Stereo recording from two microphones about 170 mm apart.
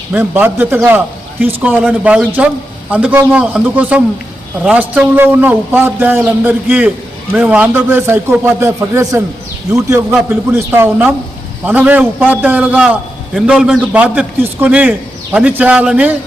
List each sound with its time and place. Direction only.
0.1 s a man's voice: 10° right (ahead or behind)